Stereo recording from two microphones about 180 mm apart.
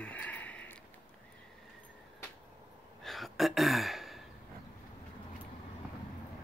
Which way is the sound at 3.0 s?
Centre (ahead or behind).